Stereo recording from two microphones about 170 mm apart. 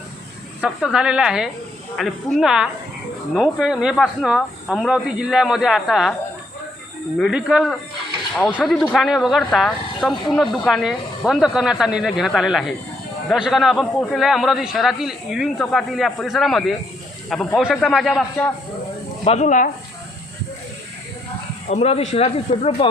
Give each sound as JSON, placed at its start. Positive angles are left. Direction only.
{"t": 0.6, "sound": "speech", "side_deg": -5}
{"t": 7.2, "sound": "speech", "side_deg": 0}
{"t": 19.2, "sound": "speech", "side_deg": 40}
{"t": 21.7, "sound": "speech", "side_deg": 40}